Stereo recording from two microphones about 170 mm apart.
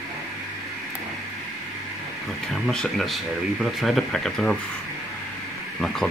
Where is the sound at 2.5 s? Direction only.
5° left (ahead or behind).